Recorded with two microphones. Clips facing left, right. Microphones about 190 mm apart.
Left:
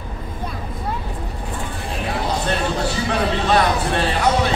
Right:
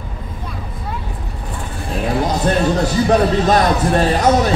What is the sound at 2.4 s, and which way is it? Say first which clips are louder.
A man's voice: right 6 dB; 40° right (ahead or behind).